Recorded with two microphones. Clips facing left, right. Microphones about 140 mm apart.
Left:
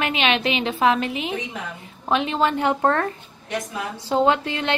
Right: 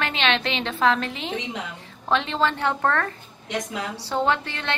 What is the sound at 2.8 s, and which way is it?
A woman's voice, 25° left (ahead or behind).